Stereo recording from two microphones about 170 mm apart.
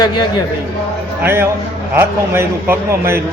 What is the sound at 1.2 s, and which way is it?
A man's voice, 15° right (ahead or behind).